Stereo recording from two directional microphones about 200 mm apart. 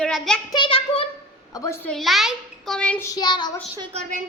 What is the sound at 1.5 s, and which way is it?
A child's voice, 15° left (ahead or behind).